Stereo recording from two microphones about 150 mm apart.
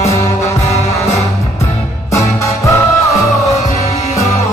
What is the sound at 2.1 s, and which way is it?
Music, 20° left (ahead or behind).